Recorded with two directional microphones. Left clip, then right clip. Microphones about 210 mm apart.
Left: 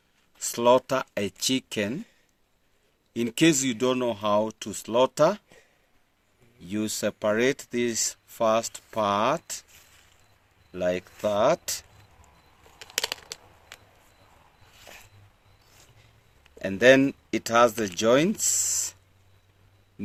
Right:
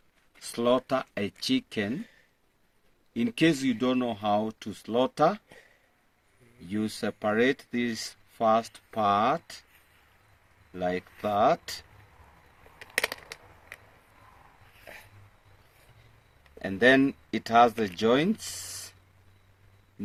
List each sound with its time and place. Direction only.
0.3 s speech: 50° left (ahead or behind)
3.1 s speech: 55° left (ahead or behind)
6.6 s speech: 50° left (ahead or behind)
10.7 s speech: 50° left (ahead or behind)
16.6 s speech: 50° left (ahead or behind)